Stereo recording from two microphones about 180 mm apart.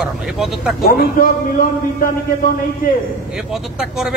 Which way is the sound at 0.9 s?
55° left (ahead or behind).